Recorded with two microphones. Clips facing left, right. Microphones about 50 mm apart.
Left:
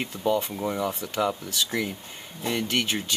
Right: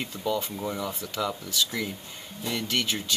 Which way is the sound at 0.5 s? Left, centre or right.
Centre.